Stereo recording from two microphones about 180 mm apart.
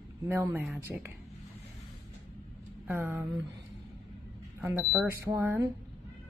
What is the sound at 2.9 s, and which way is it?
Speech, 10° right (ahead or behind).